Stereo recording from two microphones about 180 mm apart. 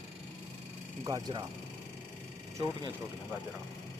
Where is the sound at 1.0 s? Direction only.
20° right (ahead or behind).